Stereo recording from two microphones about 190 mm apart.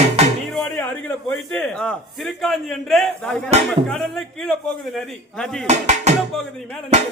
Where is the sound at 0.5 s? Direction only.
5° left (ahead or behind).